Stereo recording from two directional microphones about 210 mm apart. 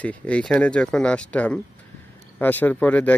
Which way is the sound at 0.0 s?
5° left (ahead or behind).